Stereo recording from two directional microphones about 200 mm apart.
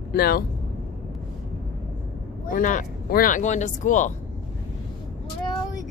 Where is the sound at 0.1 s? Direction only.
50° left (ahead or behind).